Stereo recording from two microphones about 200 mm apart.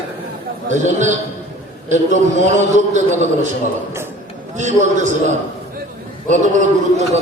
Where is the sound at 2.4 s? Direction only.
35° right (ahead or behind).